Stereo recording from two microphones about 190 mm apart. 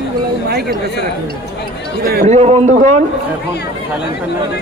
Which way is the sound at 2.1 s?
40° right (ahead or behind).